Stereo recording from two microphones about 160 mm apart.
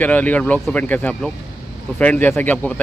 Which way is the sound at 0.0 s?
10° left (ahead or behind).